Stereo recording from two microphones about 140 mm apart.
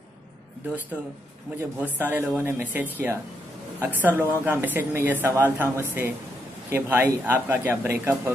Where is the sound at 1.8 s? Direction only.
15° right (ahead or behind).